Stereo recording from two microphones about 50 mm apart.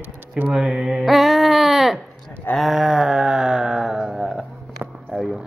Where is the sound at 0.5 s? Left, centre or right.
Centre.